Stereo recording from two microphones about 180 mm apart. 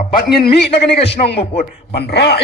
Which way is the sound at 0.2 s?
60° left (ahead or behind).